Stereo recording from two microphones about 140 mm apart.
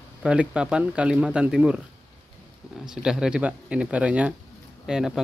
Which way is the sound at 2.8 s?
5° right (ahead or behind).